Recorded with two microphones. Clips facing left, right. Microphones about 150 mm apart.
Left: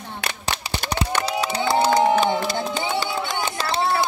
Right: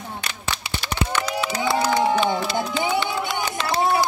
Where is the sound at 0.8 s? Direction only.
45° left (ahead or behind).